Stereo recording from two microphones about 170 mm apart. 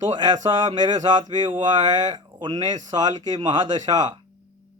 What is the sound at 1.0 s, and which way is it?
Speech, 25° right (ahead or behind).